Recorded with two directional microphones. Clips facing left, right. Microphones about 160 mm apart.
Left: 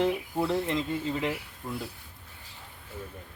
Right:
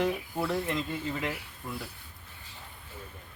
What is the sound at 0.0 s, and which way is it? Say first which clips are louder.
Speech: left 3 dB; 20° left (ahead or behind).